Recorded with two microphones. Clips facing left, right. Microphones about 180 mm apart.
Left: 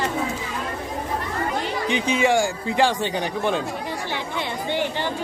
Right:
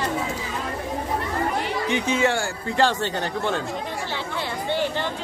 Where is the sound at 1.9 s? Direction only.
15° left (ahead or behind).